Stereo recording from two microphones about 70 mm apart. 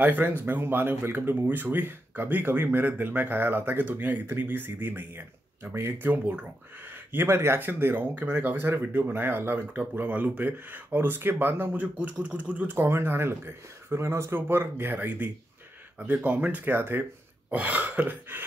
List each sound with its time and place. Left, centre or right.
0.0 s speech: right
16.7 s speech: right
17.5 s speech: right